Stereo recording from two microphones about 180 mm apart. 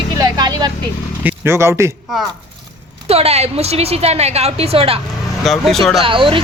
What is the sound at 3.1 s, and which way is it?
A woman's voice, 35° right (ahead or behind).